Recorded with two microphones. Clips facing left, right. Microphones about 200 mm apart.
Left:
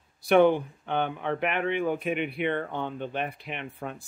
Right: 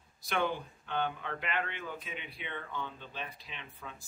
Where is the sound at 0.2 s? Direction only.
60° left (ahead or behind).